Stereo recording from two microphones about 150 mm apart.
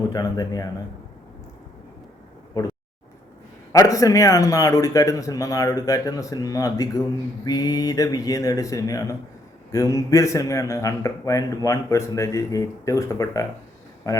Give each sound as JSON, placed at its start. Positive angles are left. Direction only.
{"t": 0.1, "sound": "a man's voice", "side_deg": 25}
{"t": 3.7, "sound": "a man's voice", "side_deg": 20}